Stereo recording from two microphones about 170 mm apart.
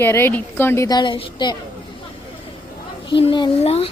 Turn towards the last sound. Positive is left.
turn(degrees=35)  # may be behind; listen again after turning